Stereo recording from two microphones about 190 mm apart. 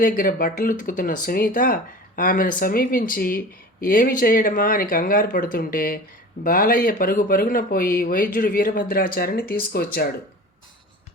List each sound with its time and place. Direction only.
0.0 s speech: 45° left (ahead or behind)